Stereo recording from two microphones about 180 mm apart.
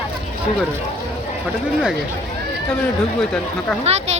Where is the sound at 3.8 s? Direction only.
35° right (ahead or behind).